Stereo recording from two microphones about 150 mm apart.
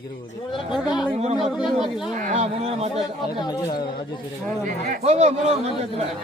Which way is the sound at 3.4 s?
30° left (ahead or behind).